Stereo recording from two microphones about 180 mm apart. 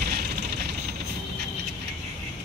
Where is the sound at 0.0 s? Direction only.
60° right (ahead or behind).